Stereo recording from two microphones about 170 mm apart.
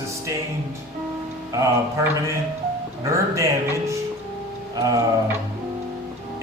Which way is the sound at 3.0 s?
20° right (ahead or behind).